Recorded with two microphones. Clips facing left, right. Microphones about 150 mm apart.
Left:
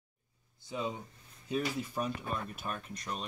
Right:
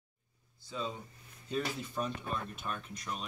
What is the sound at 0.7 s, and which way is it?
Speech, 15° left (ahead or behind).